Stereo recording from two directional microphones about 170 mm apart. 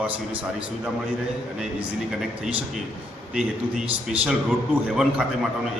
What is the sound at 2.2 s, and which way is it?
A man's voice, centre (ahead or behind).